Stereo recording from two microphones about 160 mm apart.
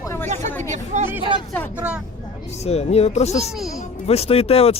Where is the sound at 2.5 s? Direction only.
40° left (ahead or behind).